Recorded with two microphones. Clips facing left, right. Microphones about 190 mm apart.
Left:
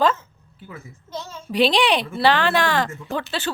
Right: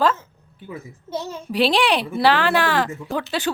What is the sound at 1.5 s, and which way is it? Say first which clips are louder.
Speech: even; 5° right (ahead or behind).